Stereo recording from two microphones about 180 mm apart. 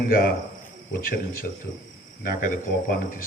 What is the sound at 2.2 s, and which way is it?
A man's voice, 50° left (ahead or behind).